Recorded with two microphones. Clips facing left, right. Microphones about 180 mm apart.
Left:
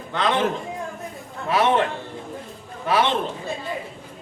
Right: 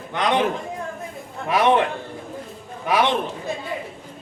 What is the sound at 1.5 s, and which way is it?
Speech, 15° right (ahead or behind).